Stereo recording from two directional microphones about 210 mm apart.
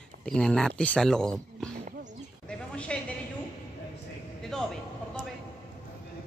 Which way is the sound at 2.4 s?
5° left (ahead or behind).